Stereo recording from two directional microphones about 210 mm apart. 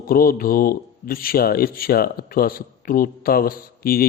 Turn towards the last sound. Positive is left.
turn(degrees=45)  # may be behind; listen again after turning